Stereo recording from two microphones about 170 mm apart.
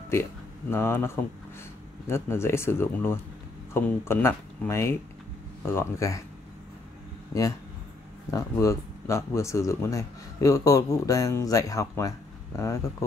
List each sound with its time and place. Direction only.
0.1 s speech: 15° left (ahead or behind)
8.3 s speech: 20° left (ahead or behind)